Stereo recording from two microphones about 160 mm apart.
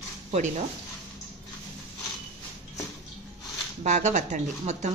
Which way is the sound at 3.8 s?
50° right (ahead or behind).